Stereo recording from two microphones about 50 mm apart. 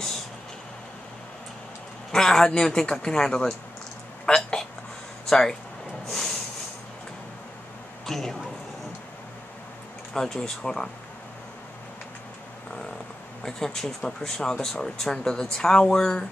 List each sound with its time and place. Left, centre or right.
2.1 s speech: centre
4.3 s a sound: centre
5.2 s speech: centre
6.0 s a sound: centre
8.1 s speech: centre
10.1 s speech: centre
13.4 s speech: centre